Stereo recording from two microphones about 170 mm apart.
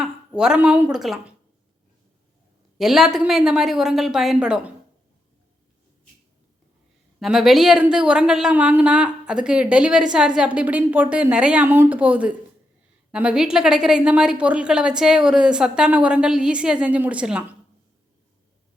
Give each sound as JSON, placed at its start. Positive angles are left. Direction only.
{"t": 0.0, "sound": "speech", "side_deg": -5}
{"t": 2.7, "sound": "a woman's voice", "side_deg": 0}
{"t": 7.2, "sound": "a woman's voice", "side_deg": 0}